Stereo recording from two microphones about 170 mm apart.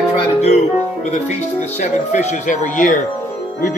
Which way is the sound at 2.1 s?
45° left (ahead or behind).